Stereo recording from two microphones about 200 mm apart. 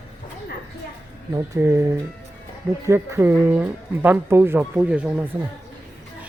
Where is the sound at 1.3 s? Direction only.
15° right (ahead or behind).